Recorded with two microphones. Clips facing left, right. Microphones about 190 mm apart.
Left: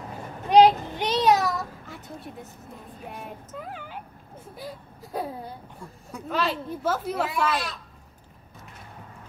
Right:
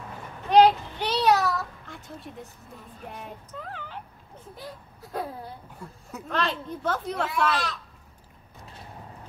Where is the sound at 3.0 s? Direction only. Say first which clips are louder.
Left 1 dB; 5° left (ahead or behind).